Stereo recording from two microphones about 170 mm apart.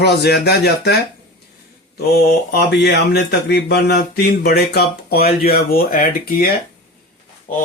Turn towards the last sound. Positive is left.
turn(degrees=50)  # may be behind; listen again after turning